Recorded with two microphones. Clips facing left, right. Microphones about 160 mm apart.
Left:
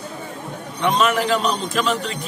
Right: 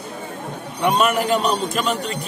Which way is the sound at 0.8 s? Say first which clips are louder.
Right 1 dB; 10° right (ahead or behind).